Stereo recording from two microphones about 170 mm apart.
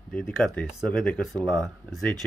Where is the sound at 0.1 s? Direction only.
5° left (ahead or behind).